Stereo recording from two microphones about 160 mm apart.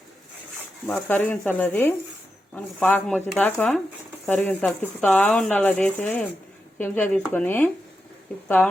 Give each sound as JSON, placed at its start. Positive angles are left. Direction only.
{"t": 1.0, "sound": "speech", "side_deg": 10}